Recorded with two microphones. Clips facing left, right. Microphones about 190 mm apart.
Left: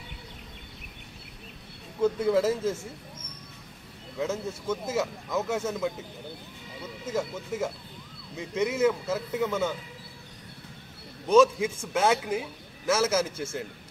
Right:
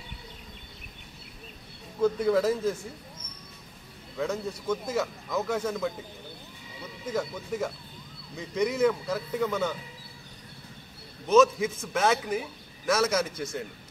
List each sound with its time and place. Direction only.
2.0 s a man's voice: 10° left (ahead or behind)
4.2 s a man's voice: 5° left (ahead or behind)
7.1 s a man's voice: 5° left (ahead or behind)
11.2 s a man's voice: 10° left (ahead or behind)